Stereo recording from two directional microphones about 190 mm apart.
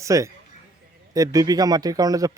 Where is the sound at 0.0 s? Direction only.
15° right (ahead or behind).